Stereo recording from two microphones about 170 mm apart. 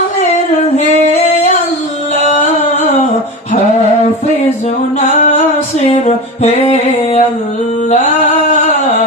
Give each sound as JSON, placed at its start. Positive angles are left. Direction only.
{"t": 4.9, "sound": "music", "side_deg": 45}
{"t": 6.4, "sound": "music", "side_deg": 40}